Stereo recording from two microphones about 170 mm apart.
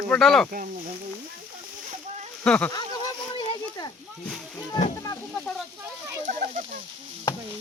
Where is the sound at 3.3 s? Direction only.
30° left (ahead or behind).